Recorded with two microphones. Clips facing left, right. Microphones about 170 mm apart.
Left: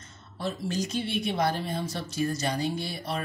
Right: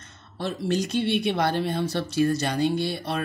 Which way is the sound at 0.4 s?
65° right (ahead or behind).